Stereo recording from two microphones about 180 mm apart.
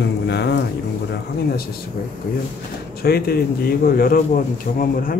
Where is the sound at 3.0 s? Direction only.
60° left (ahead or behind).